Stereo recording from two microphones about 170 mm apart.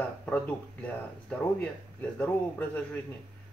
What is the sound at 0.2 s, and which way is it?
Speech, 5° left (ahead or behind).